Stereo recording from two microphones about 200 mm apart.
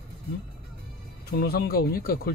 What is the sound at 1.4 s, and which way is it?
Speech, 50° left (ahead or behind).